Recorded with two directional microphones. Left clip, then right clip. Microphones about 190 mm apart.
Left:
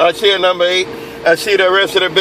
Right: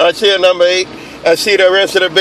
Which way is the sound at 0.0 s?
20° right (ahead or behind).